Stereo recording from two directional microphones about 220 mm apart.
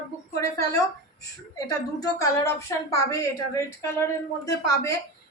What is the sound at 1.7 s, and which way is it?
A woman's voice, 15° left (ahead or behind).